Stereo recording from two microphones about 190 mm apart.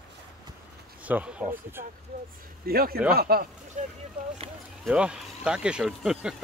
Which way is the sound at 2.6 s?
50° right (ahead or behind).